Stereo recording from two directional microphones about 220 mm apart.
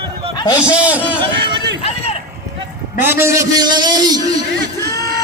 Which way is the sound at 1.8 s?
30° left (ahead or behind).